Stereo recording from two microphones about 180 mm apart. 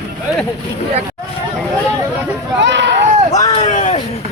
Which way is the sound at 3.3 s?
40° left (ahead or behind).